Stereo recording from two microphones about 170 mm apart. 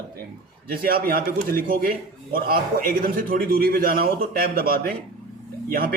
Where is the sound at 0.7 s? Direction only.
60° right (ahead or behind).